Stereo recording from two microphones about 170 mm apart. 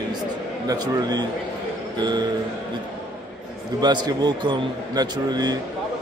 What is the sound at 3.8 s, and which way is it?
Speech, 25° right (ahead or behind).